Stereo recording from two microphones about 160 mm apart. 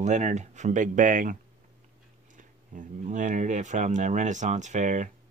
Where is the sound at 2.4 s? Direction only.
50° right (ahead or behind).